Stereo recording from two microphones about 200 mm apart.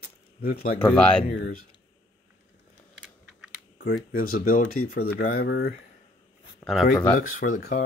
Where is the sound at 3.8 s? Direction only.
55° left (ahead or behind).